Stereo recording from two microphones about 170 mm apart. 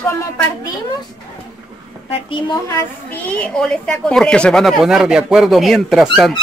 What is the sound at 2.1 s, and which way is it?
Speech, 30° left (ahead or behind).